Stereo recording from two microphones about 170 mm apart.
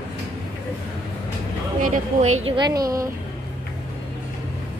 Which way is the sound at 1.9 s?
45° right (ahead or behind).